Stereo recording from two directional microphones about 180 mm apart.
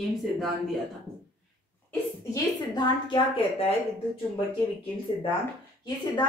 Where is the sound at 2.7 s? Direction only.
25° left (ahead or behind).